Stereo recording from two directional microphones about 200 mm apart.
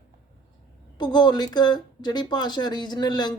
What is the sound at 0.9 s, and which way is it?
Speech, 20° left (ahead or behind).